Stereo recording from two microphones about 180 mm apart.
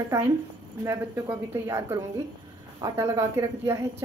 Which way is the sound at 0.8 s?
15° right (ahead or behind).